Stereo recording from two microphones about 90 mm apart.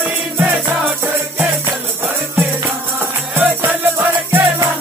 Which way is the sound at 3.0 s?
20° right (ahead or behind).